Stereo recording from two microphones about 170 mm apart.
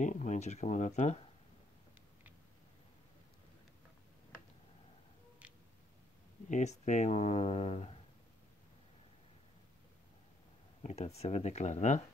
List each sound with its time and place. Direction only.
0.0 s speech: 45° left (ahead or behind)
6.5 s speech: 40° left (ahead or behind)
10.8 s speech: 40° left (ahead or behind)